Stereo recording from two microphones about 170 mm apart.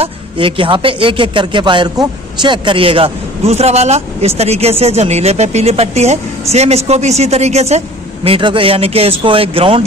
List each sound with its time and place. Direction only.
0.0 s speech: 30° right (ahead or behind)